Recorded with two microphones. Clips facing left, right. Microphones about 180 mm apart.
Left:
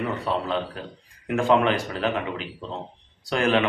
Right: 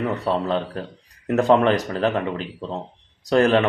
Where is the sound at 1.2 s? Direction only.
40° right (ahead or behind).